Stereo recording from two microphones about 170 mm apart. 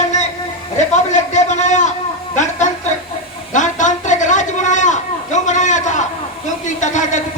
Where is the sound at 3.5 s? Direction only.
45° left (ahead or behind).